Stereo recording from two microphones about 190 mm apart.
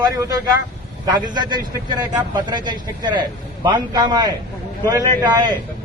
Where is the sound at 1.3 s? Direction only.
20° right (ahead or behind).